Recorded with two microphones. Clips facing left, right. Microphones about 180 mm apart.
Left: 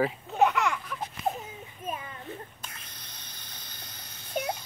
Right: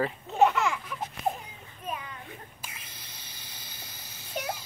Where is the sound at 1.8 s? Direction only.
45° left (ahead or behind).